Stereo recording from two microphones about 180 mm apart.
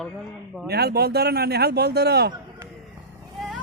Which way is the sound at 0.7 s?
65° right (ahead or behind).